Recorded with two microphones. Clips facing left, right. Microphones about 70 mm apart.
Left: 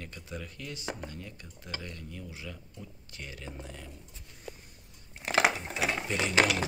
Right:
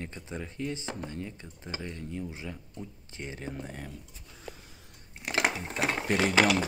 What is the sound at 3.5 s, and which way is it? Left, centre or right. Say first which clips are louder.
Speech: right 5 dB; right.